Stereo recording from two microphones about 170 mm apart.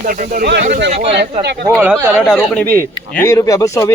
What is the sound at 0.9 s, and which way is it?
Speech, 35° right (ahead or behind).